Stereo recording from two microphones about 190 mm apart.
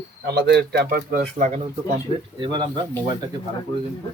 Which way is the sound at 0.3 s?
60° right (ahead or behind).